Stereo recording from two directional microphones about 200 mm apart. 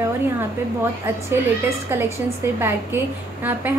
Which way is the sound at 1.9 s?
10° right (ahead or behind).